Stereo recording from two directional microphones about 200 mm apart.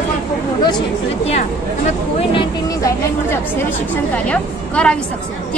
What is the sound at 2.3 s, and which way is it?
A woman's voice, 15° left (ahead or behind).